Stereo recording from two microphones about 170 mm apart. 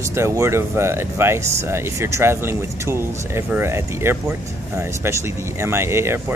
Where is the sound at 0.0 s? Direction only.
15° right (ahead or behind).